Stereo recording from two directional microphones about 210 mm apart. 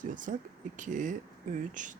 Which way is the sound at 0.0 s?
40° right (ahead or behind).